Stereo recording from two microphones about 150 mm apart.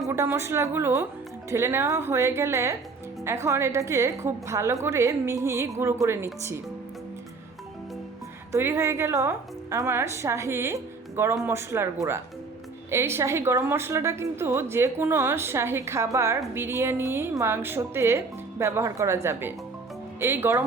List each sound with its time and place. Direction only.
0.0 s a woman's voice: 15° right (ahead or behind)
8.5 s a woman's voice: 20° right (ahead or behind)
12.9 s a woman's voice: 15° right (ahead or behind)